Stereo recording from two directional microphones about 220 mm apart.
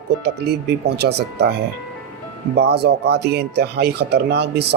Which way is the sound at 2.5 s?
50° right (ahead or behind).